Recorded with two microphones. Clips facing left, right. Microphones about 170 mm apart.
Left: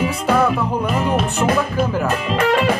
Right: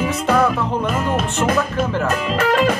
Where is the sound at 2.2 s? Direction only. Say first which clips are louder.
Right 1 dB; 40° right (ahead or behind).